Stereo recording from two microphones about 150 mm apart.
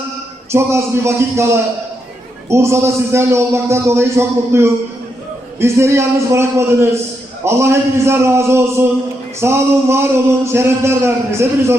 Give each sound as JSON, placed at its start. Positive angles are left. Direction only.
{"t": 0.5, "sound": "speech", "side_deg": -20}